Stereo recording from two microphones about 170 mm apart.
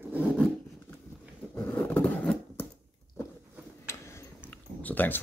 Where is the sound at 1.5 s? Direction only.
10° left (ahead or behind).